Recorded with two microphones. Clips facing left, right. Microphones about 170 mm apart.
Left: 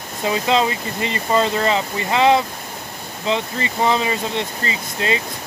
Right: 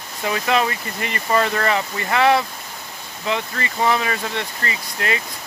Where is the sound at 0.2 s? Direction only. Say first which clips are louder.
Left 2 dB; 20° left (ahead or behind).